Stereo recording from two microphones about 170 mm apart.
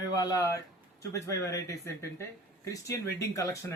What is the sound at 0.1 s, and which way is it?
Speech, 20° left (ahead or behind).